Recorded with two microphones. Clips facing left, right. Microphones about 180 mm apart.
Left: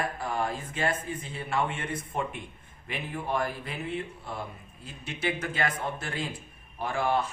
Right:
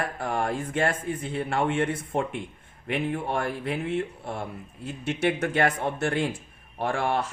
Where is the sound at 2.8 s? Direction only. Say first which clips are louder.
Right 7 dB; 60° right (ahead or behind).